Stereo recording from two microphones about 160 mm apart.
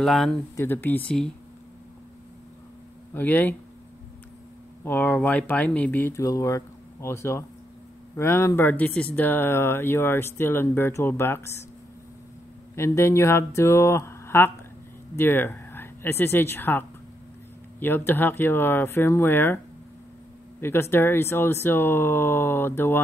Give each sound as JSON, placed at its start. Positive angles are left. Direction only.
{"t": 0.0, "sound": "speech", "side_deg": 0}
{"t": 0.6, "sound": "speech", "side_deg": 15}
{"t": 3.2, "sound": "speech", "side_deg": 10}
{"t": 4.8, "sound": "speech", "side_deg": 10}
{"t": 12.7, "sound": "speech", "side_deg": 15}
{"t": 20.6, "sound": "speech", "side_deg": 15}